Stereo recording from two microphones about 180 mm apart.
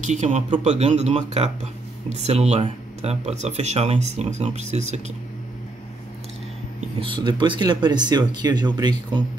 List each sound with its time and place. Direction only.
0.0 s speech: 40° right (ahead or behind)
7.0 s speech: 25° right (ahead or behind)